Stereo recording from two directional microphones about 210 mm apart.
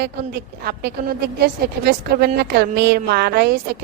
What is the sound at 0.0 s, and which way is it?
A woman's voice, 50° right (ahead or behind).